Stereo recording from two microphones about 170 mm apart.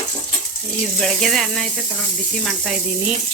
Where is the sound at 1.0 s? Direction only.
Centre (ahead or behind).